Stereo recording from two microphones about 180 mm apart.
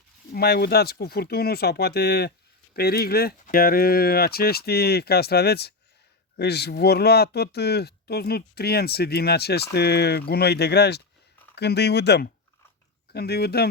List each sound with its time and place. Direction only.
0.3 s speech: 60° left (ahead or behind)